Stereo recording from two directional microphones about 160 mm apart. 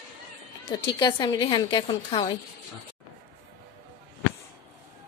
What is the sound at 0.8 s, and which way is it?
A woman's voice, 30° left (ahead or behind).